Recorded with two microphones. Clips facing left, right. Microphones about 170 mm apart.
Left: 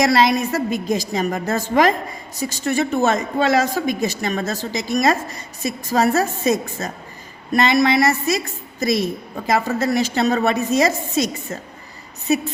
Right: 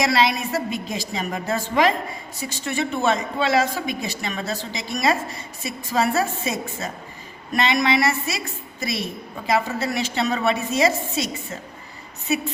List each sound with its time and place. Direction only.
0.0 s a woman's voice: 45° left (ahead or behind)